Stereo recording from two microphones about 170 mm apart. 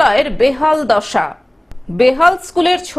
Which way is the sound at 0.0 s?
Centre (ahead or behind).